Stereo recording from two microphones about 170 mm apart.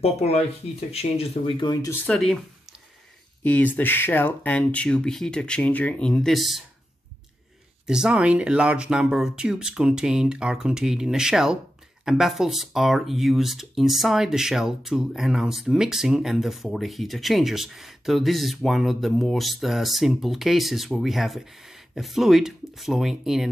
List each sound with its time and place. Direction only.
0.0 s speech: 40° left (ahead or behind); by 2.0 s 20° left (ahead or behind)
2.0 s speech: 5° left (ahead or behind)
3.4 s speech: 10° left (ahead or behind)
7.8 s speech: 5° right (ahead or behind)